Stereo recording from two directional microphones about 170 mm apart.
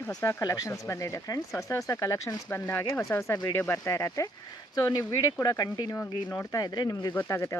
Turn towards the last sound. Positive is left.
turn(degrees=15)  # may be behind; listen again after turning